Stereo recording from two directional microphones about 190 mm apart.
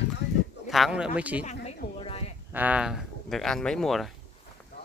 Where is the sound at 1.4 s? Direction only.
35° left (ahead or behind).